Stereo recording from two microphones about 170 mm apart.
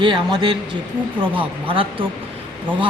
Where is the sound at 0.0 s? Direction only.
30° right (ahead or behind).